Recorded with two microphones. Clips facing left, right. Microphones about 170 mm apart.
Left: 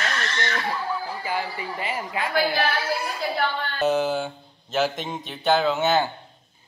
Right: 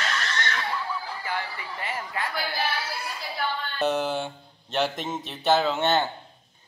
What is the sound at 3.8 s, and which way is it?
A man's voice, centre (ahead or behind).